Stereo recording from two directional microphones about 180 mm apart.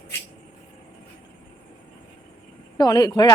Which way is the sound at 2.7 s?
20° left (ahead or behind).